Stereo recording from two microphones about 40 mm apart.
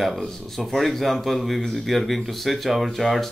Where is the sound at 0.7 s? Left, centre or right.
Centre.